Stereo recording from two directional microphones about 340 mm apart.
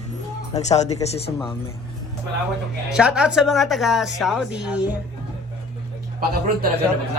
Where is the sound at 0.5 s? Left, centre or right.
Centre.